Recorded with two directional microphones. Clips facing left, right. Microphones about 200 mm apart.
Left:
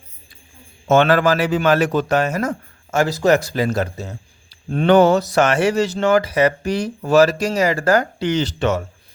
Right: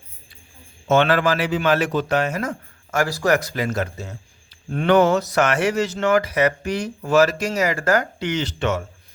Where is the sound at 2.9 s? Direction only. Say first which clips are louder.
Left 4 dB; 25° left (ahead or behind).